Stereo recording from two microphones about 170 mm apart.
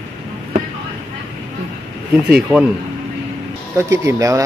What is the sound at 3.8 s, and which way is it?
Speech, 15° right (ahead or behind).